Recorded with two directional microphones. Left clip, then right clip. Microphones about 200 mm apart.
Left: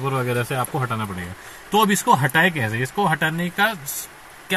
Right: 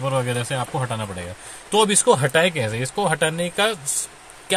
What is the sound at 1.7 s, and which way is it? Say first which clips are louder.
Speech: even; 10° right (ahead or behind).